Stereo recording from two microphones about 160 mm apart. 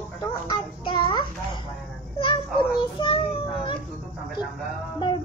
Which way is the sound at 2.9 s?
35° left (ahead or behind).